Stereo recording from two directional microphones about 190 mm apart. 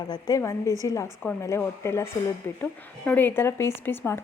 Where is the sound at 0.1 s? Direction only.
20° left (ahead or behind).